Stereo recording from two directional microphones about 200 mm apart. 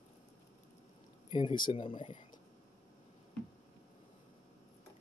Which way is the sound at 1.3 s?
25° left (ahead or behind).